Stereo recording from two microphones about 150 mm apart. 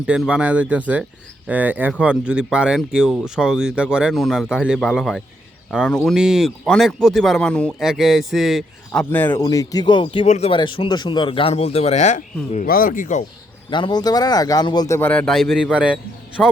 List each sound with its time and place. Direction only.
0.0 s speech: 5° right (ahead or behind)
8.9 s speech: 10° left (ahead or behind)
9.4 s speech: 25° left (ahead or behind)
10.2 s speech: 50° left (ahead or behind)
10.5 s speech: 35° left (ahead or behind); by 12.6 s 55° left (ahead or behind)
12.6 s speech: 70° left (ahead or behind); by 13.2 s 55° left (ahead or behind)
13.7 s speech: 30° left (ahead or behind); by 16.0 s 5° right (ahead or behind)
16.4 s speech: 10° left (ahead or behind)